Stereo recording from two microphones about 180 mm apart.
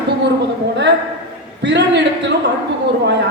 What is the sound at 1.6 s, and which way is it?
Speech, 75° right (ahead or behind).